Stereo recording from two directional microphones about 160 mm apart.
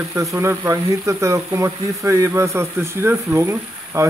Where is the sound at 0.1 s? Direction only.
20° right (ahead or behind).